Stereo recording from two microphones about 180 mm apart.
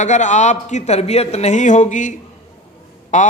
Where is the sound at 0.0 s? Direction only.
40° left (ahead or behind).